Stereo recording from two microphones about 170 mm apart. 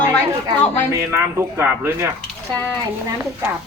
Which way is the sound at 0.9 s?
15° right (ahead or behind).